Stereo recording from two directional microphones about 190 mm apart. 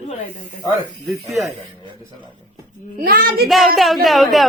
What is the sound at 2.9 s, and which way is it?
Speech, 55° right (ahead or behind).